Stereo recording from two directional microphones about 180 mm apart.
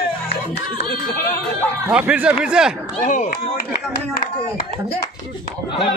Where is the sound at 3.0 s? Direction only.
45° left (ahead or behind).